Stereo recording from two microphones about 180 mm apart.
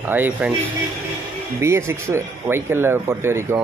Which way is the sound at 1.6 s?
15° right (ahead or behind).